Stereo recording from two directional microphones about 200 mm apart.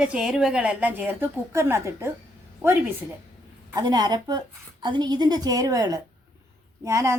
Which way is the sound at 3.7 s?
20° right (ahead or behind).